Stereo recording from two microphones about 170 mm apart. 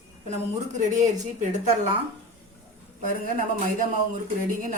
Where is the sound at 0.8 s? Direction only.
45° right (ahead or behind).